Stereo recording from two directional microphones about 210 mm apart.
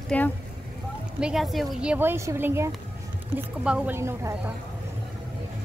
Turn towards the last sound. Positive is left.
turn(degrees=-10)  # may be behind; listen again after turning